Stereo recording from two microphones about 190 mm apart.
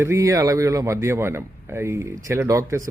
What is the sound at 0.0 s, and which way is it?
Speech, 15° right (ahead or behind).